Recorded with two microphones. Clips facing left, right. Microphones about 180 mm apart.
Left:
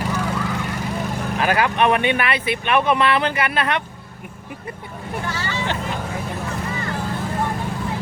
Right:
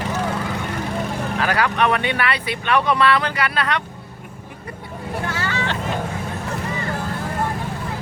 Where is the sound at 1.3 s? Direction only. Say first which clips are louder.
Left 2 dB; 20° left (ahead or behind).